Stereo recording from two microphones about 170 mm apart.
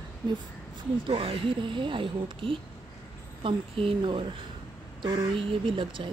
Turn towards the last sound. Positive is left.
turn(degrees=-30)  # may be behind; listen again after turning